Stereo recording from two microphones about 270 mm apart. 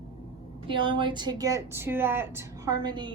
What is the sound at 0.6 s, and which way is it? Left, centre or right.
A woman's voice, centre.